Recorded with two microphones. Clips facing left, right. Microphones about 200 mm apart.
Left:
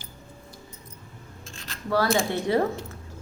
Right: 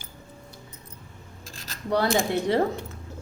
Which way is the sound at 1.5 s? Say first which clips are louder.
Left 1 dB; 40° right (ahead or behind).